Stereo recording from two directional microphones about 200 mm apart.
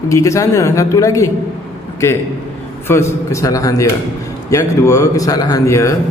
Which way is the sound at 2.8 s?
15° left (ahead or behind).